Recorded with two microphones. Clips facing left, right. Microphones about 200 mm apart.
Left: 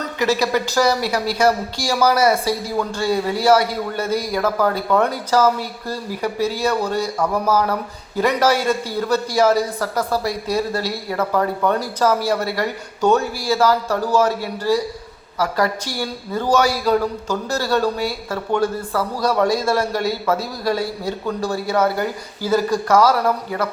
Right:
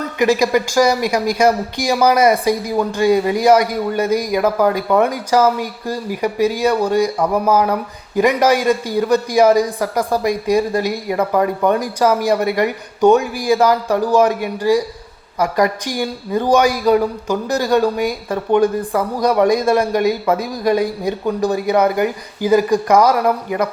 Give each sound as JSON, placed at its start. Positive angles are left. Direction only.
{"t": 0.2, "sound": "speech", "side_deg": -15}